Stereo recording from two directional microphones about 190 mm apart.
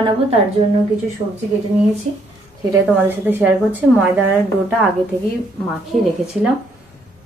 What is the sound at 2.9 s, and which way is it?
Speech, 10° right (ahead or behind).